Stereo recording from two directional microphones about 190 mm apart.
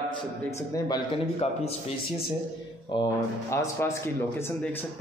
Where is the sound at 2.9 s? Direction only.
25° left (ahead or behind).